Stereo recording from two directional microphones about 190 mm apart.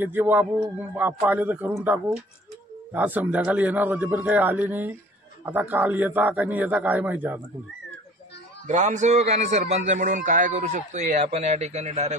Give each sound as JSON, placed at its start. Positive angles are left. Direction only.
{"t": 0.0, "sound": "a man's voice", "side_deg": -10}
{"t": 2.9, "sound": "a man's voice", "side_deg": -10}
{"t": 8.6, "sound": "a man's voice", "side_deg": -40}